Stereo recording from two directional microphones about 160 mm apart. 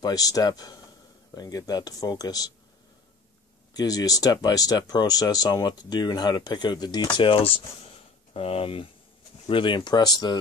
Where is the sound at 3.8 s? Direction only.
25° left (ahead or behind).